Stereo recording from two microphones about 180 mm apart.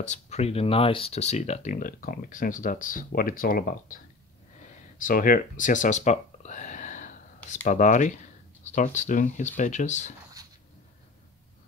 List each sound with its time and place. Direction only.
0.0 s speech: 40° left (ahead or behind)
4.6 s a sound: 45° left (ahead or behind)
7.6 s speech: 45° left (ahead or behind)